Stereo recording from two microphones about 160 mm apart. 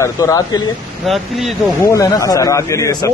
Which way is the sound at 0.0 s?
20° left (ahead or behind).